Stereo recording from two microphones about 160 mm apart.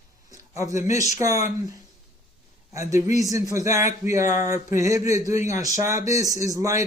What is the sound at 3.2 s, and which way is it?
Speech, 20° right (ahead or behind).